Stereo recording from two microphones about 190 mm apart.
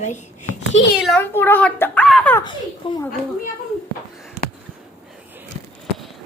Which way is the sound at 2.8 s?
25° left (ahead or behind).